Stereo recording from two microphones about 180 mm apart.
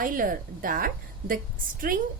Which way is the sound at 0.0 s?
50° right (ahead or behind).